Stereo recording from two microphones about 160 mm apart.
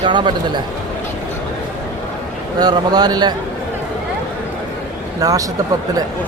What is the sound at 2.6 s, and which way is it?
Speech, 25° right (ahead or behind).